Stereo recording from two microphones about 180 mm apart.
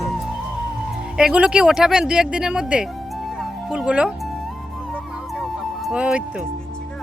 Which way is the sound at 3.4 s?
5° right (ahead or behind).